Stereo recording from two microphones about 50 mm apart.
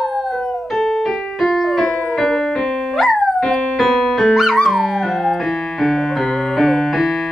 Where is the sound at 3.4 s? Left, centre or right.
Centre.